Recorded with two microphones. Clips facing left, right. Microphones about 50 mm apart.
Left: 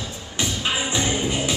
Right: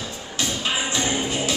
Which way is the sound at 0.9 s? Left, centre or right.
Centre.